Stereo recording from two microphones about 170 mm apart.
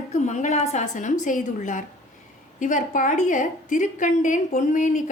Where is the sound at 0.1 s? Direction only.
45° left (ahead or behind).